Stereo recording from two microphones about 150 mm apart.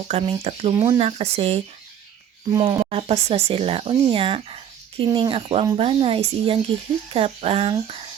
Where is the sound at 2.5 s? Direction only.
20° right (ahead or behind).